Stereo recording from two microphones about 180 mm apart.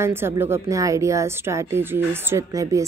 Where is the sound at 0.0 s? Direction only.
15° right (ahead or behind).